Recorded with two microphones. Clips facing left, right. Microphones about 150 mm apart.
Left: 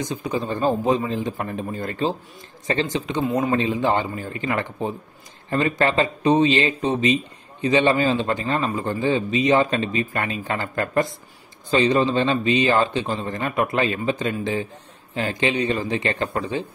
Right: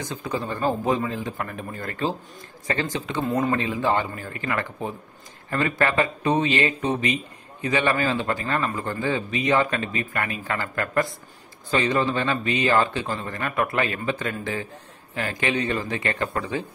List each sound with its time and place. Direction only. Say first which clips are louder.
0.0 s a man's voice: left 3 dB; 15° left (ahead or behind)